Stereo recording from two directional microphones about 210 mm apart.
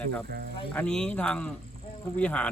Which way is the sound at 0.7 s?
5° left (ahead or behind).